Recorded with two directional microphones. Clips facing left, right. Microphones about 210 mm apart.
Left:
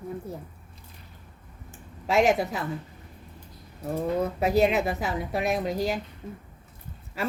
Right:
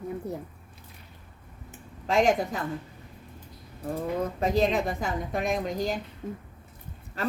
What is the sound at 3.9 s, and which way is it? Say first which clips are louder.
Speech: left 3 dB; 10° left (ahead or behind).